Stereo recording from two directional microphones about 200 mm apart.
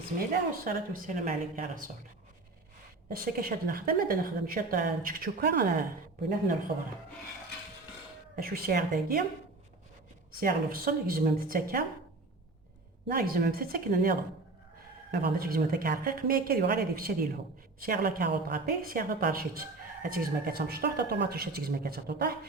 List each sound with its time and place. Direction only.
0.2 s a woman's voice: 45° right (ahead or behind)
3.1 s a woman's voice: 45° right (ahead or behind)
8.4 s a woman's voice: 50° right (ahead or behind)
10.4 s a woman's voice: 45° right (ahead or behind)
13.1 s a woman's voice: 45° right (ahead or behind)